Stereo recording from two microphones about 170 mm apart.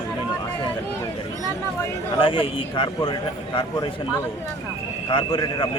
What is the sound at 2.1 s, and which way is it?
A man's voice, 30° left (ahead or behind).